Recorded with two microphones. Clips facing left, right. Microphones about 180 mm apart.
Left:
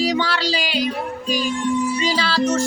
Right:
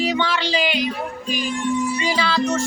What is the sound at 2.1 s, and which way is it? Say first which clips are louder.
Music: even; 35° left (ahead or behind).